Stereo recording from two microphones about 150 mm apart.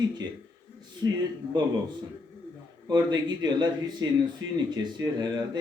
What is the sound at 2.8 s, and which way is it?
Speech, 30° right (ahead or behind).